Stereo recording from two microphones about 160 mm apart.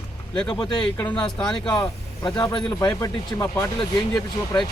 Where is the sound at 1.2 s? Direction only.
5° left (ahead or behind).